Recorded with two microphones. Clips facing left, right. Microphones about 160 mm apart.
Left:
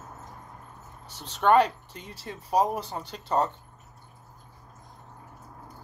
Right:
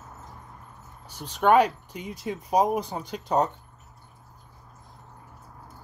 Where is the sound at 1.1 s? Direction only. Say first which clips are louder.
Right 1 dB; 10° right (ahead or behind).